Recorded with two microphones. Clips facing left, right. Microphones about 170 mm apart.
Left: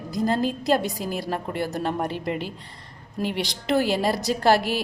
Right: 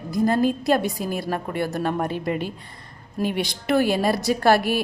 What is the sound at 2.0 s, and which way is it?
Speech, 50° right (ahead or behind).